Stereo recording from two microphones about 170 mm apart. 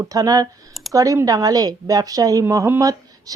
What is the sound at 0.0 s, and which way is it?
A woman's voice, 20° right (ahead or behind).